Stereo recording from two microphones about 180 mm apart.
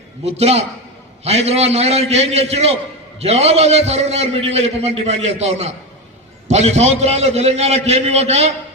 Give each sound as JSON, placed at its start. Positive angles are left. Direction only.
{"t": 0.3, "sound": "a man's voice", "side_deg": -35}